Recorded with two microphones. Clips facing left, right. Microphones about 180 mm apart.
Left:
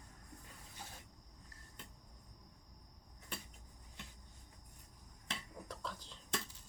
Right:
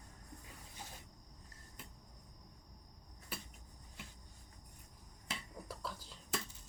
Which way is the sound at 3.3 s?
5° right (ahead or behind).